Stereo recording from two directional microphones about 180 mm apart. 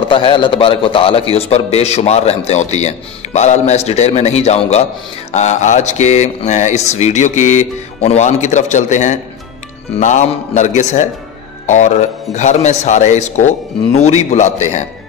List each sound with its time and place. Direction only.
0.1 s a man's voice: 30° left (ahead or behind)